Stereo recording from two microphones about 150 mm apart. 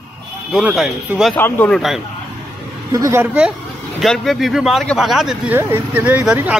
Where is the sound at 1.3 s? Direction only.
10° left (ahead or behind).